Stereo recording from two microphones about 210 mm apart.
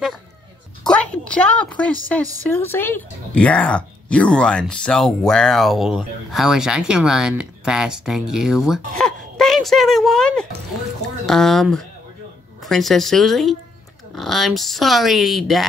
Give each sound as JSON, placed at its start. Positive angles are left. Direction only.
{"t": 0.8, "sound": "a woman's voice", "side_deg": 5}